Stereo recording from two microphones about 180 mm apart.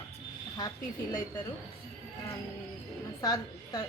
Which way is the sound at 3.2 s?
20° left (ahead or behind).